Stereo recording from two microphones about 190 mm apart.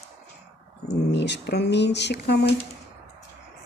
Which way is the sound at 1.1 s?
65° left (ahead or behind).